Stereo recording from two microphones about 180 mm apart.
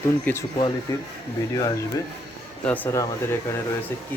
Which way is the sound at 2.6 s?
10° left (ahead or behind).